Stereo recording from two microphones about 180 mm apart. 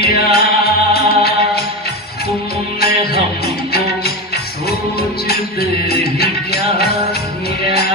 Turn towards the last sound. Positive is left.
turn(degrees=60)  # may be behind; listen again after turning